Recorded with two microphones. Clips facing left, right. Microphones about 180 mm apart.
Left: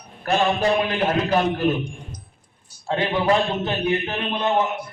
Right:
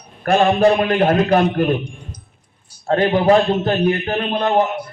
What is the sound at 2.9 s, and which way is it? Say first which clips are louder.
A man's voice: right 6 dB; 50° right (ahead or behind).